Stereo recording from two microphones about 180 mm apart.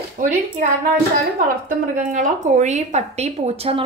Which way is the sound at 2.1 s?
45° right (ahead or behind).